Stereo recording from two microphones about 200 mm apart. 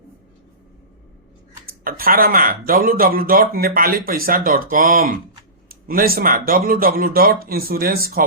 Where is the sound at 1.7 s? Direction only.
45° right (ahead or behind).